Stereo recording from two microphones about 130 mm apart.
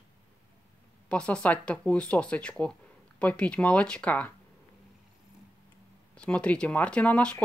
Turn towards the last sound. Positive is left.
turn(degrees=10)  # may be behind; listen again after turning